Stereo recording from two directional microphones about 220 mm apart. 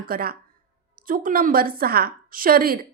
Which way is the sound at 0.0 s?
40° right (ahead or behind).